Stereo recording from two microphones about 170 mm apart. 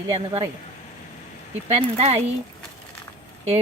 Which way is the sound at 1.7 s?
40° right (ahead or behind).